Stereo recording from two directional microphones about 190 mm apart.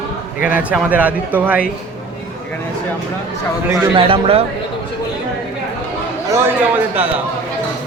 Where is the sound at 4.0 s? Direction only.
30° right (ahead or behind).